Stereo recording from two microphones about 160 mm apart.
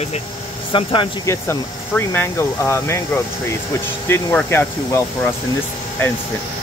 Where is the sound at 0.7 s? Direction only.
30° left (ahead or behind).